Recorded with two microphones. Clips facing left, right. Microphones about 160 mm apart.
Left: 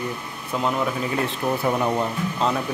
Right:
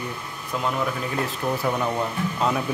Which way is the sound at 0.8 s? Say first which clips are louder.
Left 2 dB; 10° left (ahead or behind).